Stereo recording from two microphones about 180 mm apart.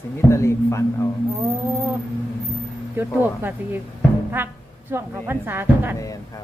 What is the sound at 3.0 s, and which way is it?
Speech, 10° right (ahead or behind).